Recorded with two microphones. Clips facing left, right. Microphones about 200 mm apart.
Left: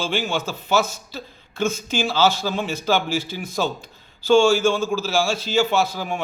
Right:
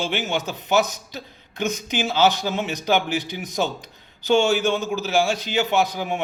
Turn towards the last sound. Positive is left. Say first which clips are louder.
# even
turn(degrees=-20)  # may be behind; listen again after turning